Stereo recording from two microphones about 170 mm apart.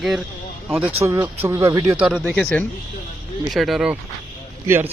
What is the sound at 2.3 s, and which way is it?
Speech, 10° left (ahead or behind).